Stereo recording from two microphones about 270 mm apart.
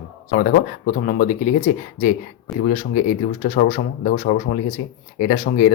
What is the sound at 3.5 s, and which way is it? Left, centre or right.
Speech, left.